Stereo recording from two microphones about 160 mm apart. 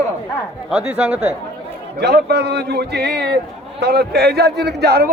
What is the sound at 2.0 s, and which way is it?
Speech, 90° right.